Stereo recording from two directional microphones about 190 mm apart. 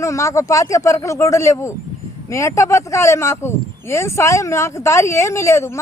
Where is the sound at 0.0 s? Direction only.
15° left (ahead or behind).